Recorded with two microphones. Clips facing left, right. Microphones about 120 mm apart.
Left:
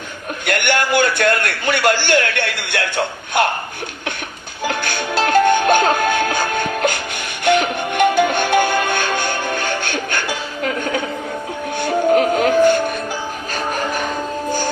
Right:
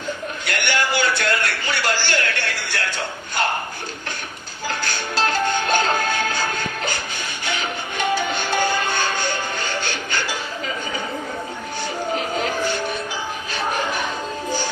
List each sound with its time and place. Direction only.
0.4 s a man's voice: 55° left (ahead or behind)
4.6 s music: 60° left (ahead or behind)
13.5 s music: 45° left (ahead or behind)